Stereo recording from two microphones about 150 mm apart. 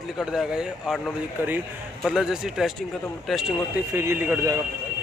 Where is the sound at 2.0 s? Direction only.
5° right (ahead or behind).